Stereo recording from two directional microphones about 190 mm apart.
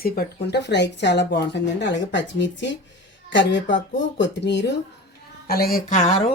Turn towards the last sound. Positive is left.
turn(degrees=40)  # may be behind; listen again after turning